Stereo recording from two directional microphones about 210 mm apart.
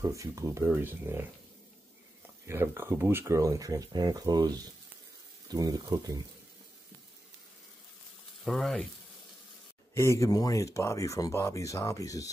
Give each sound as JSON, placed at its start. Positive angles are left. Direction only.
{"t": 0.0, "sound": "speech", "side_deg": -15}
{"t": 2.4, "sound": "speech", "side_deg": -10}
{"t": 8.5, "sound": "speech", "side_deg": 0}
{"t": 9.9, "sound": "speech", "side_deg": 15}